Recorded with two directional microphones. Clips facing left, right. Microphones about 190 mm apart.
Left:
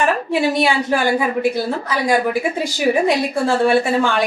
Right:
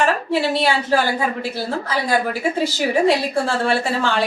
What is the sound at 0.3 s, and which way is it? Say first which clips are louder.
Speech: left 2 dB; 15° left (ahead or behind).